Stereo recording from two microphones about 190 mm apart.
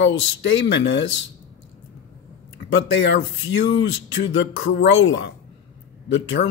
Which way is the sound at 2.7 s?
70° left (ahead or behind).